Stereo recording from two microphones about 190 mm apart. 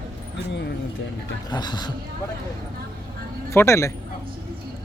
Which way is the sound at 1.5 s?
20° left (ahead or behind).